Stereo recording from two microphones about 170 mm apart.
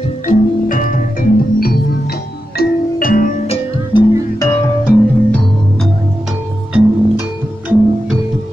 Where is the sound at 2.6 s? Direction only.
55° left (ahead or behind).